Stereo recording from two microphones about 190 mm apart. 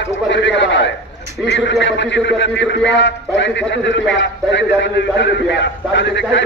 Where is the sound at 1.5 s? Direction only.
70° left (ahead or behind).